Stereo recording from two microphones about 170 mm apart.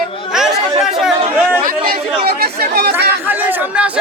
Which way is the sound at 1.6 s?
60° right (ahead or behind).